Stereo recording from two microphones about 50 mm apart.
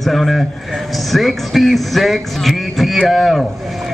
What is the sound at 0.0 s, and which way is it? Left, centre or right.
Speech, centre.